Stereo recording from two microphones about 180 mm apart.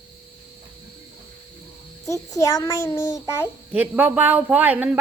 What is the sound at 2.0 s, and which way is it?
A child's voice, 20° left (ahead or behind).